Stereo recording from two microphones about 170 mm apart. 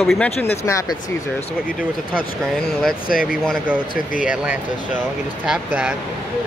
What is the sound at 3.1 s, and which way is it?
Speech, 55° left (ahead or behind).